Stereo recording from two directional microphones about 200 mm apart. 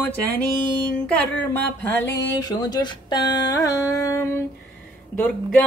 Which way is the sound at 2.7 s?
20° left (ahead or behind).